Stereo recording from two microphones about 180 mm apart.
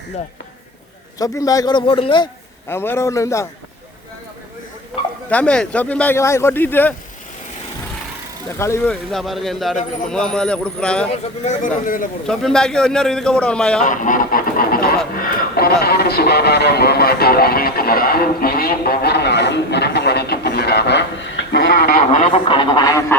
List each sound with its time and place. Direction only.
1.2 s a man's voice: 20° left (ahead or behind)
2.6 s speech: 15° left (ahead or behind)
5.3 s speech: 5° left (ahead or behind)
8.5 s a man's voice: 15° left (ahead or behind)
11.1 s speech: 45° left (ahead or behind)
12.3 s a man's voice: 5° left (ahead or behind)
13.8 s speech: 45° left (ahead or behind); by 21.7 s 85° left
21.7 s speech: 60° left (ahead or behind)
22.2 s a man's voice: 30° left (ahead or behind)